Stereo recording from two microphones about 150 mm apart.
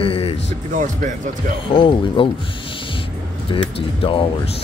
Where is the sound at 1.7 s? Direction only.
35° left (ahead or behind).